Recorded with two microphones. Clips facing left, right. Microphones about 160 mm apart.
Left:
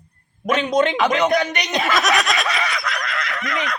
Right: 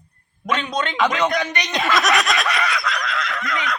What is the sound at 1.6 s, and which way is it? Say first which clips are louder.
Snicker: even; 10° left (ahead or behind).